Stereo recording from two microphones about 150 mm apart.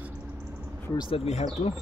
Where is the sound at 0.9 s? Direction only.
40° left (ahead or behind).